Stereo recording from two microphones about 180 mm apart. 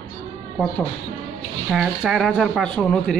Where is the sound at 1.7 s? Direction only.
Centre (ahead or behind).